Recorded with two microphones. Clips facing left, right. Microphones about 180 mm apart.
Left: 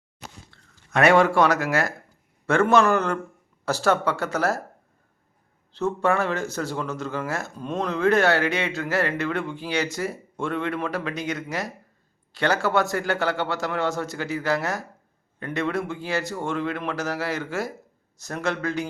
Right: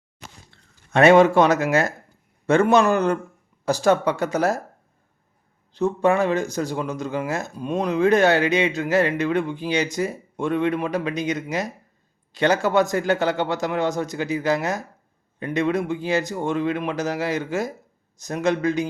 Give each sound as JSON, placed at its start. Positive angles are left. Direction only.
{"t": 0.5, "sound": "speech", "side_deg": -25}
{"t": 5.7, "sound": "speech", "side_deg": -15}